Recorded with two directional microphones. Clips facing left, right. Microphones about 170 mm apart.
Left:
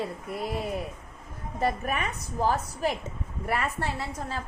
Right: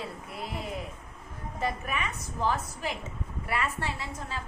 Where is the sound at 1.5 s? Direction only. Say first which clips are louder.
Left 4 dB; 40° left (ahead or behind).